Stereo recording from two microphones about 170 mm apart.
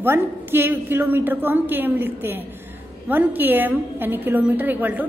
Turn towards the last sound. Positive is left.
turn(degrees=-10)  # may be behind; listen again after turning